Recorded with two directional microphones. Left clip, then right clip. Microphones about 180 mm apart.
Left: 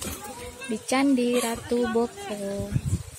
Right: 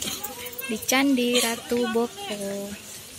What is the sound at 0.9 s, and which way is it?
Speech, 5° left (ahead or behind).